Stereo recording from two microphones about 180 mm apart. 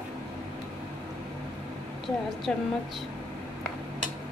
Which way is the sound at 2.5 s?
5° left (ahead or behind).